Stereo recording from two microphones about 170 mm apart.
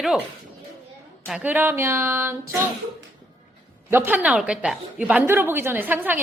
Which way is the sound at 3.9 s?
10° right (ahead or behind).